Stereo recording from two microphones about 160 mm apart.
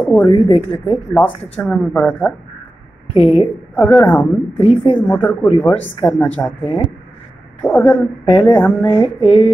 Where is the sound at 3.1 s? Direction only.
40° left (ahead or behind).